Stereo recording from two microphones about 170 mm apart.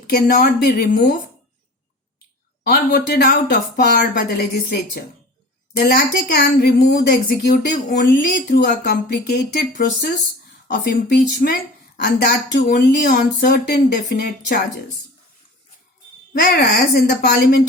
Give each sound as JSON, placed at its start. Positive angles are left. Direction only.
{"t": 0.1, "sound": "speech", "side_deg": 60}
{"t": 2.6, "sound": "a woman's voice", "side_deg": 65}
{"t": 16.3, "sound": "a woman's voice", "side_deg": 70}